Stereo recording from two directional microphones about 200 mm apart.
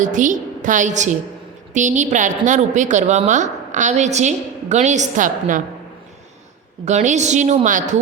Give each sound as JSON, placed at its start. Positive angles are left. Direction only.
{"t": 0.0, "sound": "a woman's voice", "side_deg": -40}
{"t": 6.8, "sound": "a woman's voice", "side_deg": -35}